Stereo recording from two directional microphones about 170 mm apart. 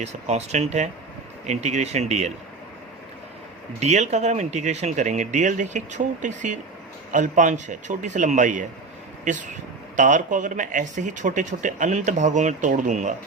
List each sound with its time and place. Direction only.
0.0 s speech: 40° right (ahead or behind)
3.8 s speech: 40° right (ahead or behind)